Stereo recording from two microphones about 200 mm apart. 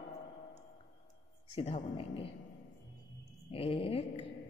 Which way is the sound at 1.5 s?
30° left (ahead or behind).